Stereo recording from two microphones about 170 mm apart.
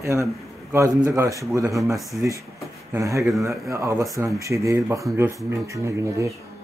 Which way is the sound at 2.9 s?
20° right (ahead or behind).